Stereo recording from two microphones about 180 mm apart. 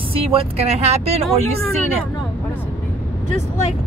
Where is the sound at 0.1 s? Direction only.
30° right (ahead or behind).